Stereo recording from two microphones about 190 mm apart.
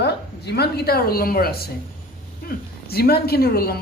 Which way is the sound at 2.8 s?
55° left (ahead or behind).